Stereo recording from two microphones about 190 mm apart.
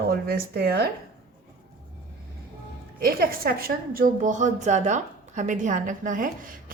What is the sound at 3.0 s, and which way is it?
A woman's voice, 50° right (ahead or behind).